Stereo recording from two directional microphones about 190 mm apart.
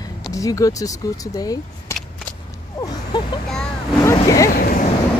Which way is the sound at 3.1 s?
20° left (ahead or behind).